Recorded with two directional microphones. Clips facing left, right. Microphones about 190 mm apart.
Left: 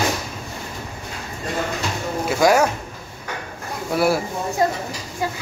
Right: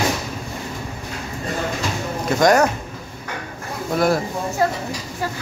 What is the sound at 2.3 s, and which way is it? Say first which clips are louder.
Speech: right 1 dB; 5° left (ahead or behind).